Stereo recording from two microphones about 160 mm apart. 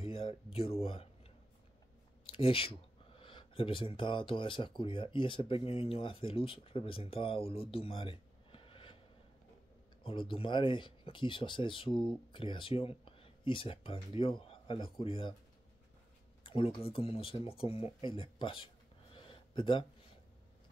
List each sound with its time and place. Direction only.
0.0 s speech: 35° left (ahead or behind)
2.2 s speech: 35° left (ahead or behind)
10.0 s speech: 30° left (ahead or behind)
16.4 s speech: 35° left (ahead or behind)
19.1 s a sound: 30° left (ahead or behind)